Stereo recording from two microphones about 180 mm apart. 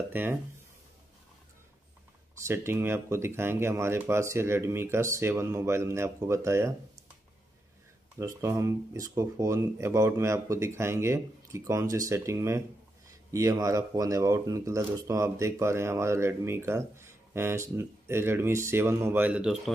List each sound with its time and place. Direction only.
0.1 s speech: 10° right (ahead or behind)
2.4 s speech: 15° right (ahead or behind)
8.2 s speech: 15° right (ahead or behind)